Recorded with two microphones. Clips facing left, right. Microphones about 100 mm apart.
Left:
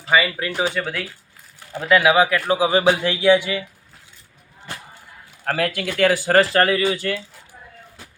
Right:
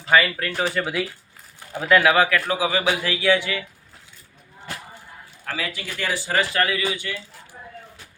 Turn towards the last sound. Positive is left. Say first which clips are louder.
# left 5 dB
turn(degrees=35)  # may be behind; listen again after turning